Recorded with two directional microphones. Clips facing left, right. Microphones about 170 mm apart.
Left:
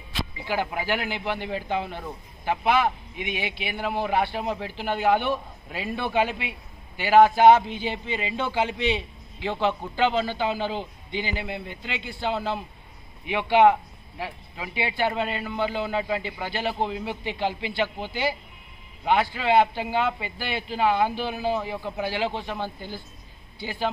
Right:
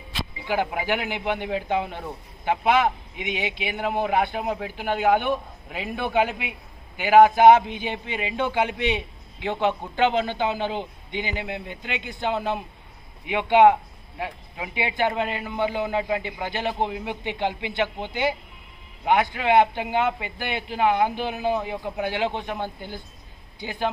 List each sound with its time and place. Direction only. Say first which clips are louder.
0.5 s a man's voice: right 2 dB; 15° right (ahead or behind)